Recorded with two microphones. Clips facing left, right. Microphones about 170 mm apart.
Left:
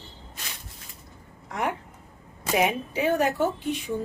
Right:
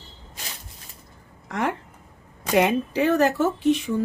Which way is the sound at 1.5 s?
90° right.